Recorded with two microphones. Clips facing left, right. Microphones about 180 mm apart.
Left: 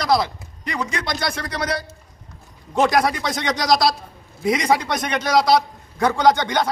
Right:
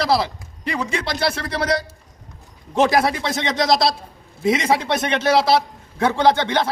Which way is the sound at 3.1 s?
25° right (ahead or behind).